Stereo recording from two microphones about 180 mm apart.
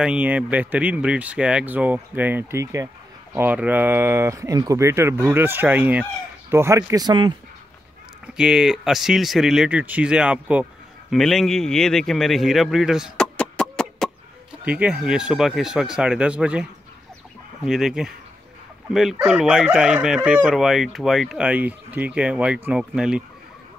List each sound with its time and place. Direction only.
0.0 s speech: 5° right (ahead or behind); by 7.3 s 25° right (ahead or behind)
8.4 s speech: 5° right (ahead or behind)
17.6 s speech: centre (ahead or behind)